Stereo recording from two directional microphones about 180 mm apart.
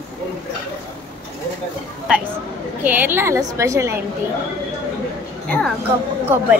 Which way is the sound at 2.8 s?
10° right (ahead or behind).